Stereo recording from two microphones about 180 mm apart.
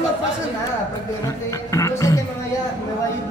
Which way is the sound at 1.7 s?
20° left (ahead or behind).